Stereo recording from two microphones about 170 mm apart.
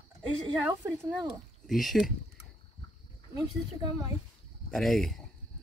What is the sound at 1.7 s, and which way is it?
Speech, centre (ahead or behind).